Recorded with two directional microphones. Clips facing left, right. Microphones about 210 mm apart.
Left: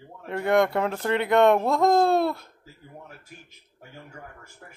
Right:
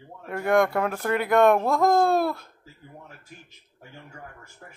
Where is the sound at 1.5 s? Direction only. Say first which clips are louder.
Even; centre (ahead or behind).